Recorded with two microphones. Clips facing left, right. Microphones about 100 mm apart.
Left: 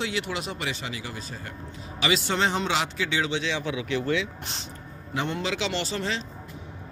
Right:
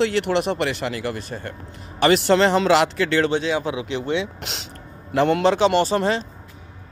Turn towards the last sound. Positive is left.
turn(degrees=-45)  # may be behind; listen again after turning